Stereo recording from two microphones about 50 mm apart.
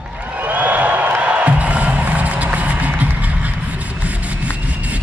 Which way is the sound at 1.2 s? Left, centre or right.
Right.